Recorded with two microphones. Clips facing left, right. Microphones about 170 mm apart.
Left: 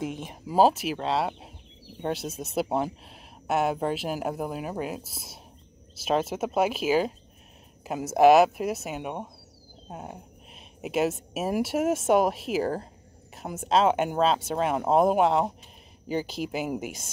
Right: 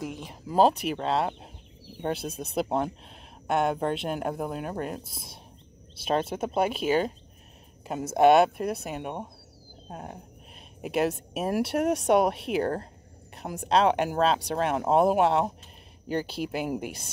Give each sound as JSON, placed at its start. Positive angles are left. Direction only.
{"t": 0.0, "sound": "speech", "side_deg": 20}
{"t": 0.5, "sound": "speech", "side_deg": 5}